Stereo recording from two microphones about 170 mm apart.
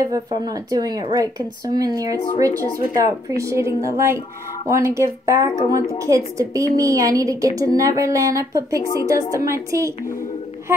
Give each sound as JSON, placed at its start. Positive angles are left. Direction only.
{"t": 0.5, "sound": "a woman's voice", "side_deg": -20}